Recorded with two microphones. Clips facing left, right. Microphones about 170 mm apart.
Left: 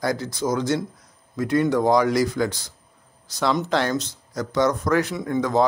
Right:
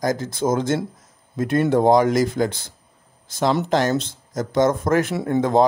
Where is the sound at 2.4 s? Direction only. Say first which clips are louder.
Right 2 dB; 35° right (ahead or behind).